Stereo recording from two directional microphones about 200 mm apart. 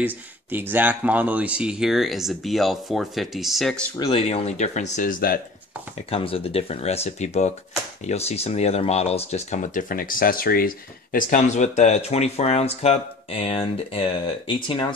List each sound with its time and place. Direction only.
0.0 s speech: 10° right (ahead or behind)
3.9 s speech: 25° left (ahead or behind); by 5.4 s 45° left (ahead or behind)
6.0 s speech: 30° left (ahead or behind)